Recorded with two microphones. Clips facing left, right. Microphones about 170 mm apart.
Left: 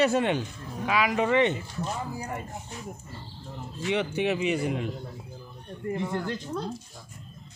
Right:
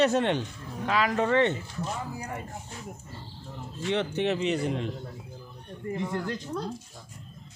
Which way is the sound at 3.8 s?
10° left (ahead or behind).